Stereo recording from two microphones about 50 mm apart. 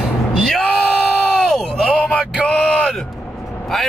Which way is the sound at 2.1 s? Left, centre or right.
Centre.